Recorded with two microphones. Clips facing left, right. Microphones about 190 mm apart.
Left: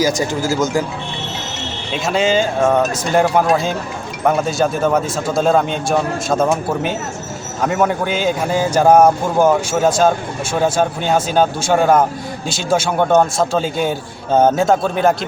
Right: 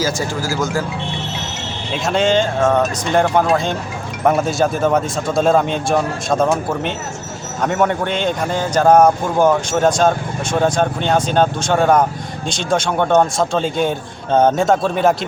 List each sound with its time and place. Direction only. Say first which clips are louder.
0.0 s speech: left 3 dB; 20° left (ahead or behind)
1.9 s speech: even; centre (ahead or behind)